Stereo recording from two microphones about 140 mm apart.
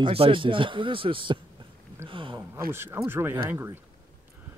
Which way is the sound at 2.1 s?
35° right (ahead or behind).